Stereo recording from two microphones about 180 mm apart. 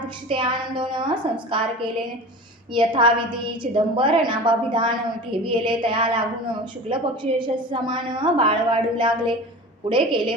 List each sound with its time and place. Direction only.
0.3 s a woman's voice: 25° right (ahead or behind)